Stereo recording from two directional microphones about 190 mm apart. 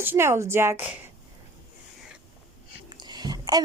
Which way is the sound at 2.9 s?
20° right (ahead or behind).